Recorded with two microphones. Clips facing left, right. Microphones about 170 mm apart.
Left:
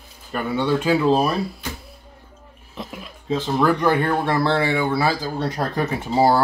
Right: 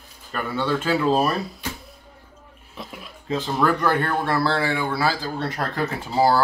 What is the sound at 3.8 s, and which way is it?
Speech, 15° left (ahead or behind).